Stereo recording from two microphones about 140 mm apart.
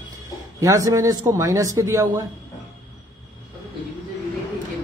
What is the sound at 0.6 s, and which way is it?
A man's voice, 25° right (ahead or behind).